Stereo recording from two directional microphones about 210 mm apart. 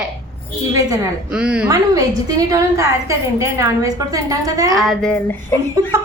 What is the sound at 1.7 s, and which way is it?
A woman's voice, 15° right (ahead or behind).